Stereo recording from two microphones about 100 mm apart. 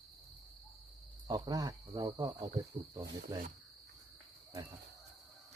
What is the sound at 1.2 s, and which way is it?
Speech, 40° right (ahead or behind).